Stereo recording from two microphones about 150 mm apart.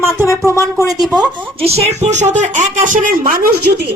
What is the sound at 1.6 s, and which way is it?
Speech, 45° right (ahead or behind).